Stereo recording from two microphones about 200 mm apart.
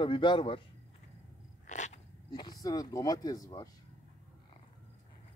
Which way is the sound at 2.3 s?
20° left (ahead or behind).